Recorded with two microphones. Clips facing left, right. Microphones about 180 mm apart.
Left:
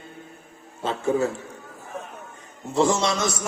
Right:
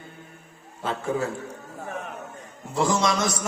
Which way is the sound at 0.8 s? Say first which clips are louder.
Left 4 dB; 25° left (ahead or behind).